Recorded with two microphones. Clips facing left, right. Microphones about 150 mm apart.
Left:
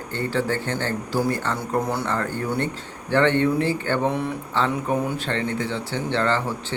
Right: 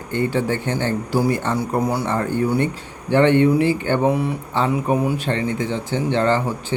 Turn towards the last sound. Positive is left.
turn(degrees=-15)  # may be behind; listen again after turning